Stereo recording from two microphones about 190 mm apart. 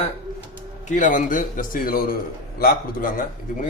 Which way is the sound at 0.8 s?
40° left (ahead or behind).